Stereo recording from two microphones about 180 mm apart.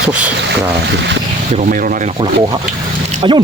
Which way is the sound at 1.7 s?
50° right (ahead or behind).